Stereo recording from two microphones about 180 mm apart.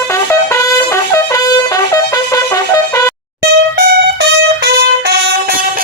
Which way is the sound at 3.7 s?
65° right (ahead or behind).